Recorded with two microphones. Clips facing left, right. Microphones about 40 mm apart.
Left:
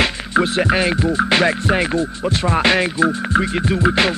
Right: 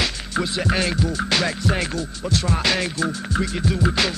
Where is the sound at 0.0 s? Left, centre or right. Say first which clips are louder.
Left 7 dB; left.